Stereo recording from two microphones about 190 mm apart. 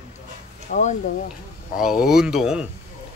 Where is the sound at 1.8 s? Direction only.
5° right (ahead or behind).